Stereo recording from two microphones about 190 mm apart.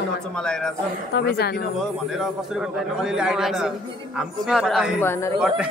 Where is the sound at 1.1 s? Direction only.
60° left (ahead or behind).